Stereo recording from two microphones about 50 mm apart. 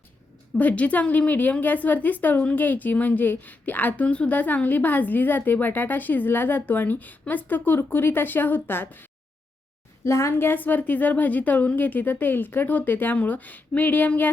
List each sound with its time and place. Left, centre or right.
0.5 s a woman's voice: left
10.0 s a woman's voice: left
10.3 s a woman's voice: left
10.6 s a woman's voice: left